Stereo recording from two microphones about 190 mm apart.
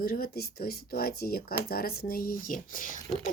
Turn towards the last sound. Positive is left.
turn(degrees=45)  # may be behind; listen again after turning